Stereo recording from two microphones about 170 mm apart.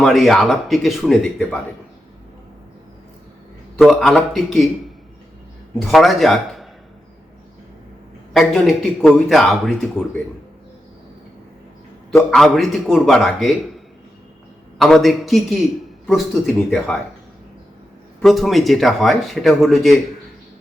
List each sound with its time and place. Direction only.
0.0 s speech: centre (ahead or behind)
3.8 s speech: centre (ahead or behind)
5.8 s speech: centre (ahead or behind)
8.3 s speech: centre (ahead or behind)
12.3 s speech: centre (ahead or behind)
18.2 s speech: centre (ahead or behind)